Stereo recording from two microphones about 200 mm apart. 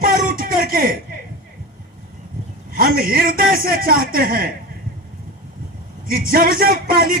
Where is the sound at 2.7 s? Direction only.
45° right (ahead or behind).